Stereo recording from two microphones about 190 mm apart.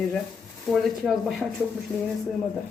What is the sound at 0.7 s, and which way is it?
Speech, centre (ahead or behind).